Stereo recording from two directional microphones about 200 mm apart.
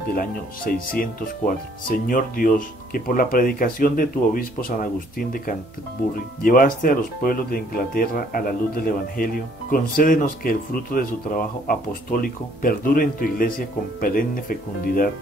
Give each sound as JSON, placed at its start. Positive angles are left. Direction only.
{"t": 0.9, "sound": "speech", "side_deg": 45}